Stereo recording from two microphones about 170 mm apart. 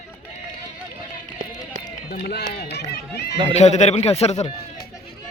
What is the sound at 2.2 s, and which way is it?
Speech, 75° left (ahead or behind).